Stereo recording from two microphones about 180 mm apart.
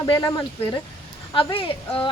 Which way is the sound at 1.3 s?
30° left (ahead or behind).